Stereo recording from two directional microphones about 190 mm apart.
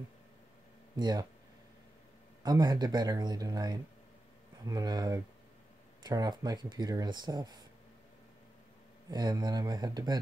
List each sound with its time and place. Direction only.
0.9 s speech: 20° right (ahead or behind)
2.4 s speech: 20° right (ahead or behind)
9.1 s speech: 20° right (ahead or behind)